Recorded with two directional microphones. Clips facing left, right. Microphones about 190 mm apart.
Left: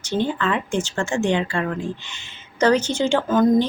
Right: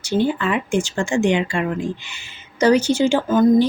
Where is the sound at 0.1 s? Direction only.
10° right (ahead or behind).